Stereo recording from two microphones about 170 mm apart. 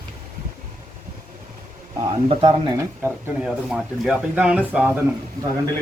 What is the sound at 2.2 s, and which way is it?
Speech, 25° right (ahead or behind).